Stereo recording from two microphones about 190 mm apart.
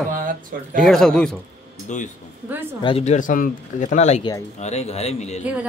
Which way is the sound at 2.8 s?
35° left (ahead or behind).